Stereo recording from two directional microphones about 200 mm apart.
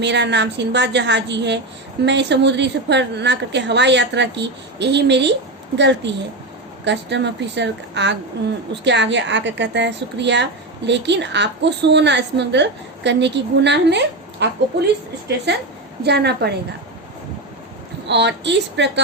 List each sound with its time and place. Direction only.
0.0 s a woman's voice: 60° right (ahead or behind)
18.1 s a woman's voice: 60° right (ahead or behind)